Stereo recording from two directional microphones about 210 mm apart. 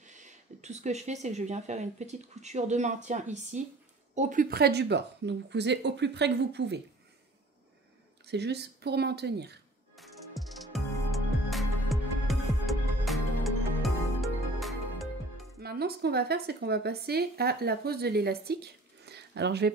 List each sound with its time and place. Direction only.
0.0 s speech: 35° right (ahead or behind); by 6.8 s 55° right (ahead or behind)
8.3 s speech: 50° right (ahead or behind)
9.9 s music: centre (ahead or behind)
15.6 s speech: 50° right (ahead or behind)